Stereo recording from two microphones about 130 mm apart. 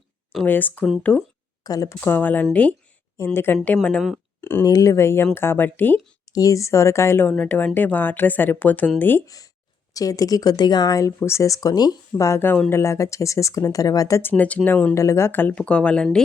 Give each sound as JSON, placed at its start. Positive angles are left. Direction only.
{"t": 0.4, "sound": "speech", "side_deg": 15}
{"t": 1.6, "sound": "speech", "side_deg": 30}
{"t": 4.4, "sound": "a sound", "side_deg": 15}
{"t": 4.6, "sound": "speech", "side_deg": 25}
{"t": 6.2, "sound": "speech", "side_deg": 25}
{"t": 9.2, "sound": "speech", "side_deg": 25}
{"t": 14.9, "sound": "speech", "side_deg": 20}